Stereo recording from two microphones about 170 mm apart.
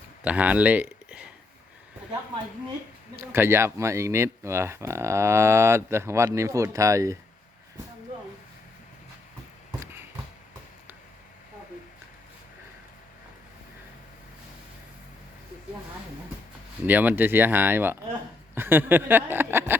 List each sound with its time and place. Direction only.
0.3 s speech: 10° right (ahead or behind)
3.3 s speech: 15° right (ahead or behind)
9.8 s a sound: 15° right (ahead or behind)
16.8 s speech: 10° right (ahead or behind)